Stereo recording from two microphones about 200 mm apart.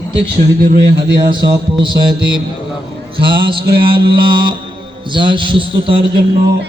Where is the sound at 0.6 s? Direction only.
50° right (ahead or behind).